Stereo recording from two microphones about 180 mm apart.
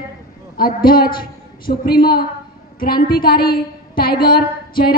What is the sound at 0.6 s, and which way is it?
A woman's voice, 55° left (ahead or behind).